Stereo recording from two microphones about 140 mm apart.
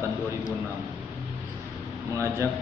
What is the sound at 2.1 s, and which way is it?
Speech, 20° right (ahead or behind).